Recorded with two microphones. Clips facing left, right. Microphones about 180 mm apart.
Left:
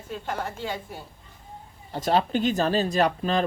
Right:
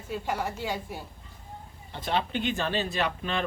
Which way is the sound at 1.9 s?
40° left (ahead or behind).